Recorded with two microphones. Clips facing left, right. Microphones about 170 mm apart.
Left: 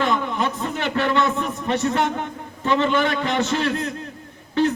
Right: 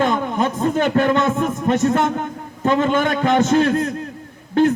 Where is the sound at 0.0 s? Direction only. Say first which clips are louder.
Right 3 dB; 45° right (ahead or behind).